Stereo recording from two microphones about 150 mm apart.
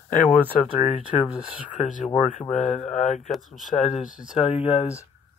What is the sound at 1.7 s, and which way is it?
Speech, 55° left (ahead or behind).